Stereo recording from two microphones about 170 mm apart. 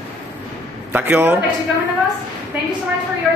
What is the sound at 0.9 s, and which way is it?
Speech, 10° right (ahead or behind).